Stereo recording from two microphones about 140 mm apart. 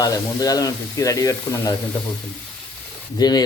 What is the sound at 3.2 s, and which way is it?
Speech, 30° left (ahead or behind).